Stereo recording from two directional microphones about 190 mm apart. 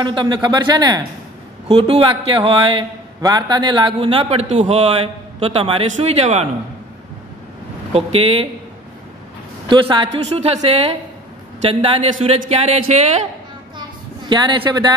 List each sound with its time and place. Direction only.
0.0 s a man's voice: 25° right (ahead or behind)
1.7 s a man's voice: 30° right (ahead or behind)
7.9 s speech: 30° right (ahead or behind)
9.7 s a man's voice: 25° right (ahead or behind)
14.3 s a man's voice: 25° right (ahead or behind)